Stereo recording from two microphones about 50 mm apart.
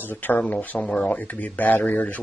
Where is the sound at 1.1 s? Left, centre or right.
Left.